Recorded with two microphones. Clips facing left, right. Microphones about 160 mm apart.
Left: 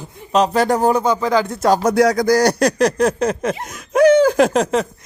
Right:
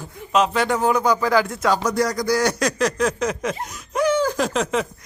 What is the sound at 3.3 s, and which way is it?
Snicker, 50° left (ahead or behind).